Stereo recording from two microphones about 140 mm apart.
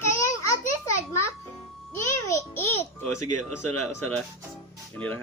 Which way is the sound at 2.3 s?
20° left (ahead or behind).